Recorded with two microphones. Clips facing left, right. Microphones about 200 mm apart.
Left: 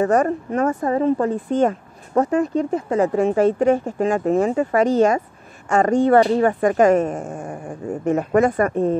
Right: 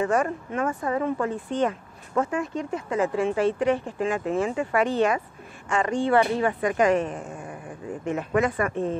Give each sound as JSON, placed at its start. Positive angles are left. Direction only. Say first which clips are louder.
{"t": 0.0, "sound": "speech", "louder": "left 6 dB", "side_deg": 40}